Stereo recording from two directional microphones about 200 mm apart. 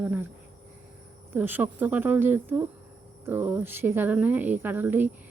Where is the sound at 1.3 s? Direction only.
10° right (ahead or behind).